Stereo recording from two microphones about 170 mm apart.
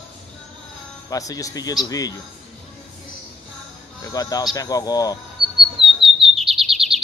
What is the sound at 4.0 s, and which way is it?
A man's voice, 20° left (ahead or behind).